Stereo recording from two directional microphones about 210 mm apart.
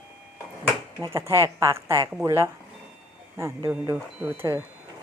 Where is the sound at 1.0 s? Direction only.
15° right (ahead or behind).